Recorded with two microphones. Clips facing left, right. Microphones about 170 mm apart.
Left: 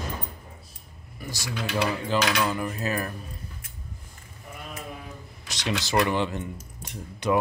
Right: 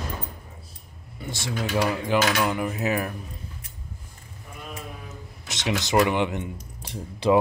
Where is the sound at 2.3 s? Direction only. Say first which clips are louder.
Right 2 dB; 15° right (ahead or behind).